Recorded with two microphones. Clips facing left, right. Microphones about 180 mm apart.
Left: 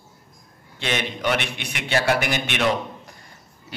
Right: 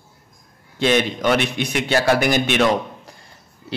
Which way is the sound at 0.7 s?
40° right (ahead or behind).